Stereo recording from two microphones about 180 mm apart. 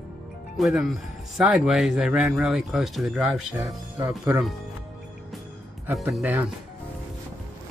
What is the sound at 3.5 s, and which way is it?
Speech, 15° right (ahead or behind).